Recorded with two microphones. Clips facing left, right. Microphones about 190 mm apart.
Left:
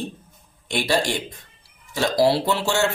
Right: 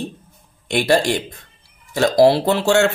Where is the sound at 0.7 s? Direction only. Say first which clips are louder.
Right 7 dB; 55° right (ahead or behind).